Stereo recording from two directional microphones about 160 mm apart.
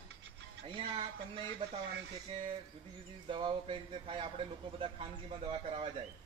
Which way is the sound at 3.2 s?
30° right (ahead or behind).